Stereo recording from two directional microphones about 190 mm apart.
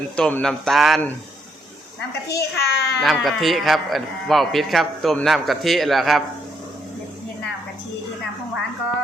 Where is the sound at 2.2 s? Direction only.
60° left (ahead or behind).